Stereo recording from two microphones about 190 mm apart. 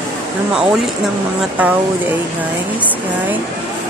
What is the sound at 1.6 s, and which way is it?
Speech, 5° right (ahead or behind).